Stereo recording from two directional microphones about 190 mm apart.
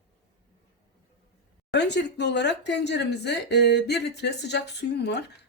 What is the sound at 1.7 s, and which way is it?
Speech, 65° left (ahead or behind).